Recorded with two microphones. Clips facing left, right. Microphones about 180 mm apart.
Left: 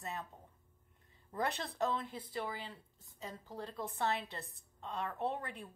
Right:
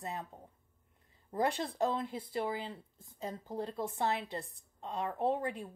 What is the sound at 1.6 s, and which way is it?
Speech, 15° right (ahead or behind).